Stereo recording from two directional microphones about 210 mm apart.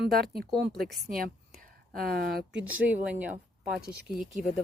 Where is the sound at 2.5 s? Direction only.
5° right (ahead or behind).